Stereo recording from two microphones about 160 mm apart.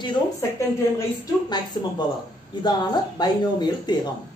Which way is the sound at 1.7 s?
25° left (ahead or behind).